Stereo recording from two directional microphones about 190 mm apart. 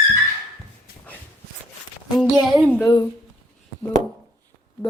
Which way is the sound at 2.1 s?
5° right (ahead or behind).